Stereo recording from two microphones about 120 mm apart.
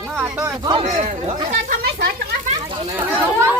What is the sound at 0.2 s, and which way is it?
Speech, 25° right (ahead or behind).